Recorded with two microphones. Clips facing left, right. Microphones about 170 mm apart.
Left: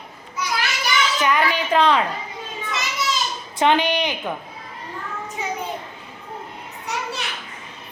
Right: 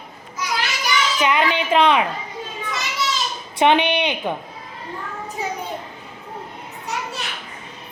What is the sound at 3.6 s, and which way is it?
Speech, 20° right (ahead or behind).